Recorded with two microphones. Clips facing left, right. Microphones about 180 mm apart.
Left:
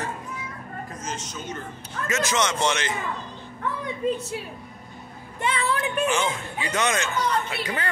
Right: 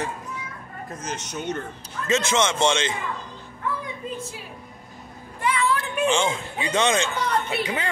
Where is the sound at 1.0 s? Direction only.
65° right (ahead or behind).